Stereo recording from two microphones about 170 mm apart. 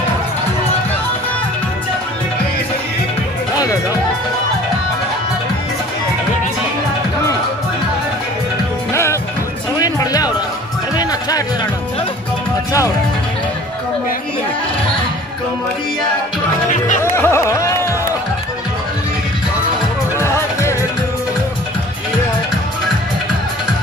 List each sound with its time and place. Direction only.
3.5 s music: 20° left (ahead or behind)
8.9 s music: 15° left (ahead or behind)
17.0 s music: 15° left (ahead or behind)
20.2 s music: 15° left (ahead or behind)